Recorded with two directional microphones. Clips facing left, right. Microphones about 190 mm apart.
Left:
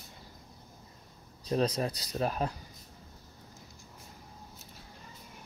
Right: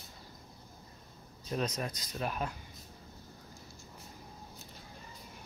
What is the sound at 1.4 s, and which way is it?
Speech, 35° left (ahead or behind).